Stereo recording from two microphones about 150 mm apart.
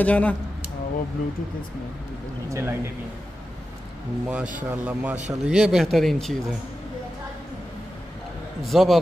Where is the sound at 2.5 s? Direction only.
15° right (ahead or behind).